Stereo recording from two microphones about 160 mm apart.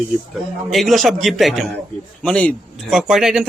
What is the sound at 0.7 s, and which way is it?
Speech, centre (ahead or behind).